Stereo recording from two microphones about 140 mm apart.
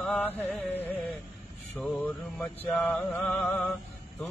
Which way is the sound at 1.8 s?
10° left (ahead or behind).